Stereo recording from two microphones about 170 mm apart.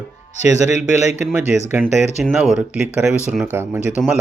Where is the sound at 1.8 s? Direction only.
10° right (ahead or behind).